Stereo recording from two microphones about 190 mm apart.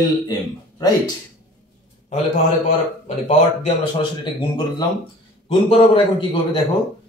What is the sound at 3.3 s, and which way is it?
Speech, 25° left (ahead or behind).